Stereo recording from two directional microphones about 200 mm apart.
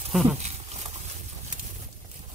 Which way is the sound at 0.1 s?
Centre (ahead or behind).